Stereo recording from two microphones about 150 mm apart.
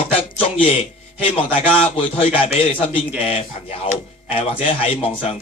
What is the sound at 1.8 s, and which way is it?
Speech, 40° left (ahead or behind).